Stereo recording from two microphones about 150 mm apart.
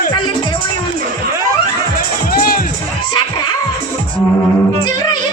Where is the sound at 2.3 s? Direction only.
75° left (ahead or behind).